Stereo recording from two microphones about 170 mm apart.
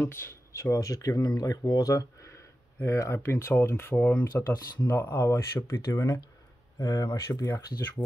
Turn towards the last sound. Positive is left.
turn(degrees=20)  # may be behind; listen again after turning